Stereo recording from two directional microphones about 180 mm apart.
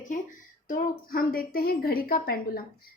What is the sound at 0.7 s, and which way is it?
A woman's voice, 55° left (ahead or behind).